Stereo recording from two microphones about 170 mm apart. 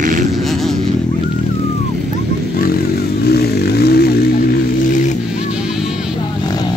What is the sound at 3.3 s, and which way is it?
Vehicle, 70° left (ahead or behind).